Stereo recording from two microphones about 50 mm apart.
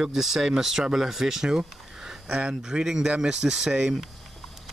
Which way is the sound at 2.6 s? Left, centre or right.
Centre.